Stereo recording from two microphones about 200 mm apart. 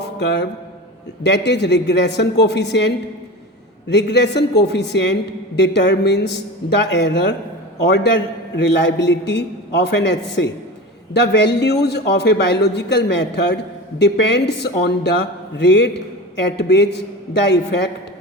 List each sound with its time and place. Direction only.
0.2 s a man's voice: 60° left (ahead or behind)
3.9 s a man's voice: 60° left (ahead or behind)